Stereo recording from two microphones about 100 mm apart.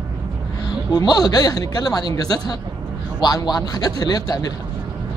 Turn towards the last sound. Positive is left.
turn(degrees=35)  # may be behind; listen again after turning